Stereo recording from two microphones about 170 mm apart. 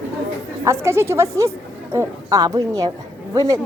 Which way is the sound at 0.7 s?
15° right (ahead or behind).